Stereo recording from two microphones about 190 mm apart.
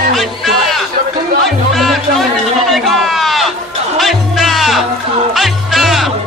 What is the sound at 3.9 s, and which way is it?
Music, centre (ahead or behind).